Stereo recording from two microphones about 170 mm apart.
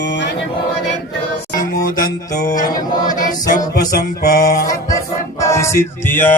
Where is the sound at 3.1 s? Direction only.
50° left (ahead or behind).